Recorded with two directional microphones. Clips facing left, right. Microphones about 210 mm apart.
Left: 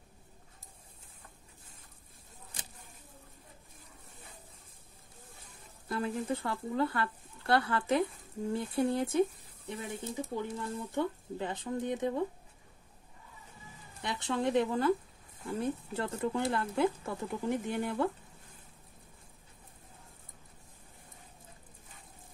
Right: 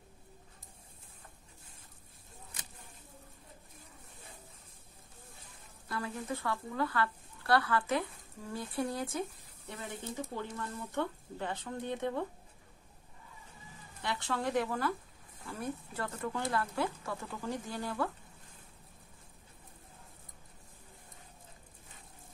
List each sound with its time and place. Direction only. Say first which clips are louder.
5.9 s speech: left 5 dB; 25° left (ahead or behind)
14.2 s speech: left 4 dB; 20° left (ahead or behind)